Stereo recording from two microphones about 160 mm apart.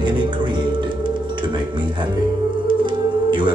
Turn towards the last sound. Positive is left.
turn(degrees=-30)  # may be behind; listen again after turning